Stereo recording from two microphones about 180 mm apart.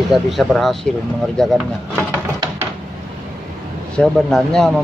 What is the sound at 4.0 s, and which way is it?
Speech, 5° left (ahead or behind).